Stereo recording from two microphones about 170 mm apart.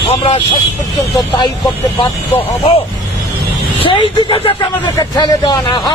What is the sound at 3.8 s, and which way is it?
Speech, 30° left (ahead or behind).